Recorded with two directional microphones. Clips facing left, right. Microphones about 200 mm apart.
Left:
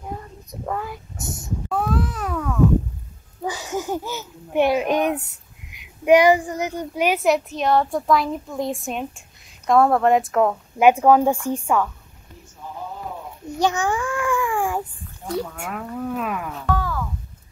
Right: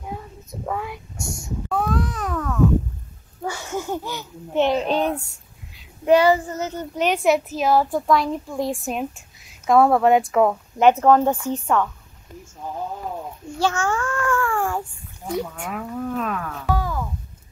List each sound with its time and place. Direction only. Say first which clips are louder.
0.7 s a child's voice: even; centre (ahead or behind)
1.7 s a sound: even; 5° left (ahead or behind)
3.4 s wheeze: left 1 dB; 15° left (ahead or behind)
4.0 s speech: left 1 dB; 15° right (ahead or behind)
4.6 s a woman's voice: left 1 dB; 10° left (ahead or behind)
10.8 s a woman's voice: left 1 dB; 10° left (ahead or behind)
13.5 s babbling: left 1 dB; 15° left (ahead or behind)
15.2 s speech: even; 10° right (ahead or behind)
15.5 s a child's voice: right 1 dB; 5° left (ahead or behind)
16.1 s a woman's voice: even; 10° left (ahead or behind)
16.6 s a sound: even; 15° right (ahead or behind)